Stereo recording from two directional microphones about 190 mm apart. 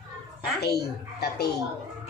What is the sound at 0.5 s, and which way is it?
Speech, 55° left (ahead or behind).